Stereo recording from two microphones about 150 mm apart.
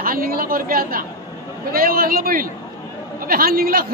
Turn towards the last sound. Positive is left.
turn(degrees=-75)  # may be behind; listen again after turning